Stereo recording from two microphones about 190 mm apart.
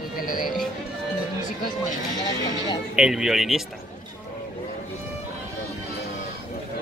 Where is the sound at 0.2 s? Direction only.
45° left (ahead or behind).